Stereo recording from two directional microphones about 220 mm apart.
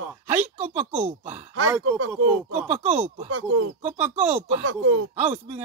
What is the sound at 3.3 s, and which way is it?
Speech, 65° right (ahead or behind).